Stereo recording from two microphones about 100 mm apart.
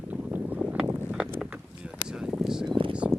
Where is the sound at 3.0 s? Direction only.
15° right (ahead or behind).